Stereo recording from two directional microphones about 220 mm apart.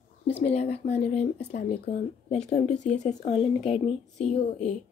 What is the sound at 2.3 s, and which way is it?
Speech, 30° left (ahead or behind).